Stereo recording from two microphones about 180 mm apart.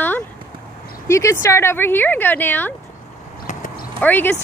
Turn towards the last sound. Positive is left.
turn(degrees=10)  # may be behind; listen again after turning